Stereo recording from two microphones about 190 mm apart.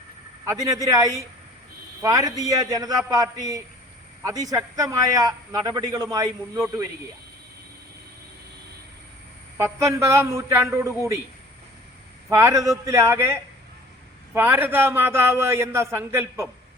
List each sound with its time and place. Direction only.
0.4 s a man's voice: 15° right (ahead or behind)
9.6 s a man's voice: 15° right (ahead or behind)
12.3 s a man's voice: 15° right (ahead or behind)